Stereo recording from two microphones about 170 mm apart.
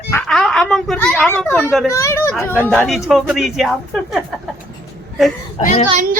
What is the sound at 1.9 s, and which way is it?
Speech, 15° left (ahead or behind).